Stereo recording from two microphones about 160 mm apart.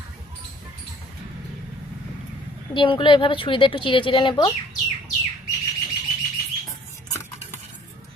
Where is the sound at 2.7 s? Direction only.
30° left (ahead or behind).